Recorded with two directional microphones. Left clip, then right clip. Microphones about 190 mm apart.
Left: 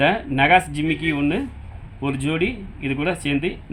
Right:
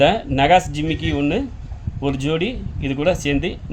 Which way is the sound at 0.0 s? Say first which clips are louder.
Right 2 dB; 20° right (ahead or behind).